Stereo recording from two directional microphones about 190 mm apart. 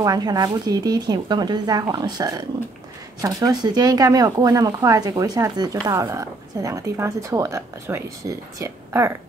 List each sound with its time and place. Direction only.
0.0 s speech: 20° right (ahead or behind)